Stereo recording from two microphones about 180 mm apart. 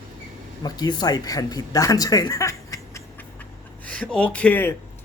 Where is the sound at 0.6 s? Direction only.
25° left (ahead or behind).